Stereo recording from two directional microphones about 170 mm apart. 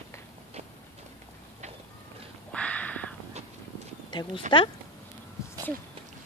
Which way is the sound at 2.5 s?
5° left (ahead or behind).